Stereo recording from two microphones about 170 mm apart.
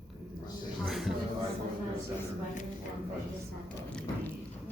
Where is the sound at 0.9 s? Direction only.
Centre (ahead or behind).